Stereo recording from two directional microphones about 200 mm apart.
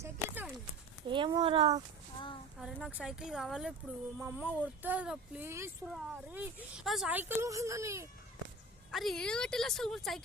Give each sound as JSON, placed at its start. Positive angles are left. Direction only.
{"t": 0.0, "sound": "a sound", "side_deg": -10}
{"t": 1.0, "sound": "speech", "side_deg": -25}
{"t": 2.6, "sound": "a woman's voice", "side_deg": 0}
{"t": 8.9, "sound": "a woman's voice", "side_deg": 0}